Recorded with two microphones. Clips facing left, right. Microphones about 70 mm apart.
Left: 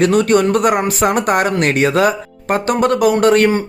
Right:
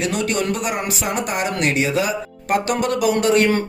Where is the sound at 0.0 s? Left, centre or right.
Left.